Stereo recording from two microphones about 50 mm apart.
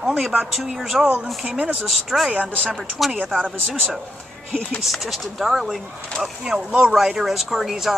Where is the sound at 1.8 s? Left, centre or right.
Centre.